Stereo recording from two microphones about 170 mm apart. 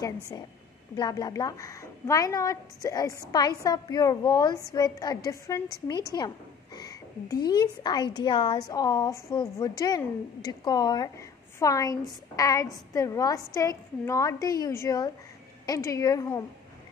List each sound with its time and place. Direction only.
0.9 s a woman's voice: 25° left (ahead or behind)
6.1 s a sound: 20° left (ahead or behind)
7.4 s a woman's voice: 25° left (ahead or behind)